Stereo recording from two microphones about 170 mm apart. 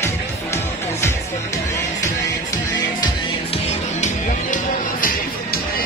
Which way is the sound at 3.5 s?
45° left (ahead or behind).